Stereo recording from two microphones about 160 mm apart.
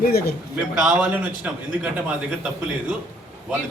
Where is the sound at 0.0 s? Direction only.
70° left (ahead or behind).